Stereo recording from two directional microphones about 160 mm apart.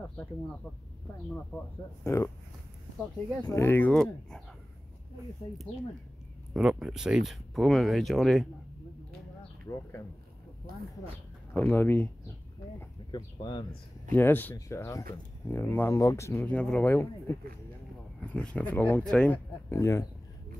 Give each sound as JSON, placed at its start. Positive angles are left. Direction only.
{"t": 2.0, "sound": "speech", "side_deg": 20}
{"t": 3.4, "sound": "speech", "side_deg": 15}
{"t": 6.5, "sound": "speech", "side_deg": -5}
{"t": 9.7, "sound": "speech", "side_deg": 30}
{"t": 11.5, "sound": "speech", "side_deg": 15}
{"t": 13.1, "sound": "speech", "side_deg": 30}
{"t": 14.1, "sound": "speech", "side_deg": 10}